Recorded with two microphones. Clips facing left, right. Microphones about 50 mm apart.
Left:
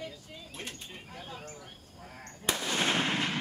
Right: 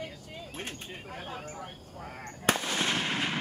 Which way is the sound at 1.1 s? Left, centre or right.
Right.